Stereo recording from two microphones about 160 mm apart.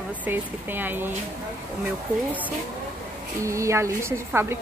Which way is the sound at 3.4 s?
20° right (ahead or behind).